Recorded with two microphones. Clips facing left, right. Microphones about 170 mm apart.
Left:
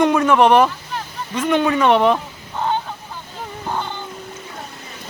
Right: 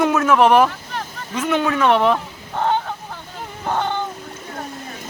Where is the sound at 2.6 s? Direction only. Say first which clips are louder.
Right 2 dB; 65° right (ahead or behind).